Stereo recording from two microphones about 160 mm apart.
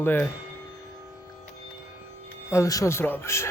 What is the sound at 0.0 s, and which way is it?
Speech, 10° left (ahead or behind).